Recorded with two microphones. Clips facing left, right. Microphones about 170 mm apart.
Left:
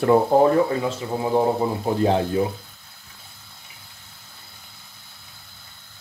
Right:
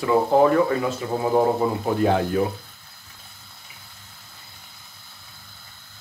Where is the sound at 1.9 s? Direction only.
25° left (ahead or behind).